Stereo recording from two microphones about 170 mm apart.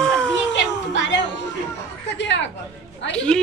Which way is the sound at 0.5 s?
90° left.